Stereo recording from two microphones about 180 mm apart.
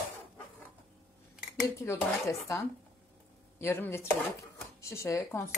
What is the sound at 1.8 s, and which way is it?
Speech, 15° left (ahead or behind).